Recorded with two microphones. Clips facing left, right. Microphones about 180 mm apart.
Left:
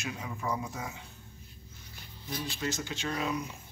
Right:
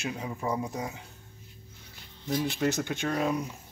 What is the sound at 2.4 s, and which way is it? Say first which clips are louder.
Speech: right 6 dB; 60° right (ahead or behind).